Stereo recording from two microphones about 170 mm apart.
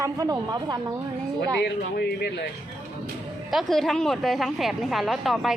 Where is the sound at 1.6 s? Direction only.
75° left (ahead or behind).